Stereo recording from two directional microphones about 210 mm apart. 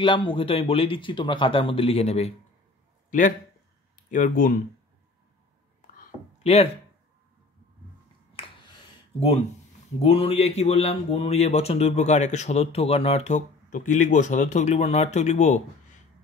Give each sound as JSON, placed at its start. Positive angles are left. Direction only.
{"t": 0.0, "sound": "a man's voice", "side_deg": 25}
{"t": 6.4, "sound": "speech", "side_deg": 30}
{"t": 10.0, "sound": "speech", "side_deg": 25}